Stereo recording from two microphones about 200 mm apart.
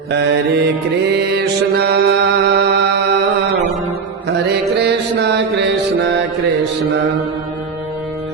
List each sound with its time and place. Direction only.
0.1 s mantra: 55° right (ahead or behind)
4.4 s music: 55° right (ahead or behind)